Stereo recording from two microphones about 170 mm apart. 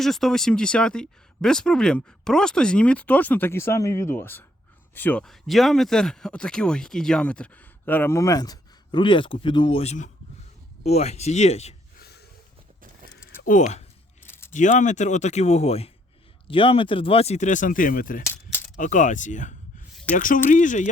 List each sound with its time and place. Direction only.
0.0 s speech: centre (ahead or behind); by 11.7 s 40° left (ahead or behind)
11.9 s snort: 70° left (ahead or behind)
13.5 s speech: 45° left (ahead or behind)